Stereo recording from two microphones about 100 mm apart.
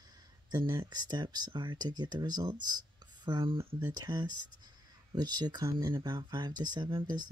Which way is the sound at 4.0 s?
45° right (ahead or behind).